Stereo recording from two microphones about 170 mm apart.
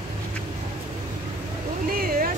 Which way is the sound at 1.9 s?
60° right (ahead or behind).